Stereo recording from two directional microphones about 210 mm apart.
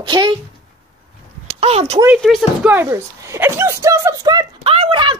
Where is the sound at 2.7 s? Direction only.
10° right (ahead or behind).